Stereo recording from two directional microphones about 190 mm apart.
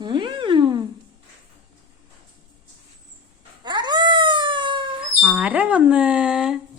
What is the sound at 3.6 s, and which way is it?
Dog, 25° right (ahead or behind).